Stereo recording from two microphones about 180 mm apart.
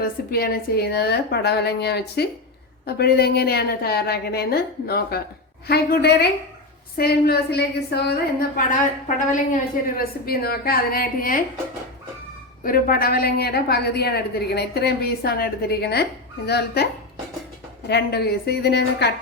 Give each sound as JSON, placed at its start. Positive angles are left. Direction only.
{"t": 0.0, "sound": "a woman's voice", "side_deg": 60}
{"t": 12.6, "sound": "a woman's voice", "side_deg": 55}